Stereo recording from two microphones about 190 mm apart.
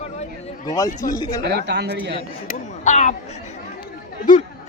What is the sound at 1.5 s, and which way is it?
Speech, 60° right (ahead or behind).